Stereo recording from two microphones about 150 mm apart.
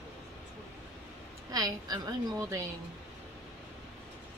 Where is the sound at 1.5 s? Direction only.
25° right (ahead or behind).